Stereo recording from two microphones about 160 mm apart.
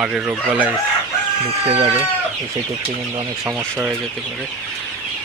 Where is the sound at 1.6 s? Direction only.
40° right (ahead or behind).